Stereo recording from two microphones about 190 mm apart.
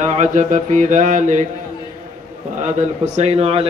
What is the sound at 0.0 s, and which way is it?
Music, 40° right (ahead or behind).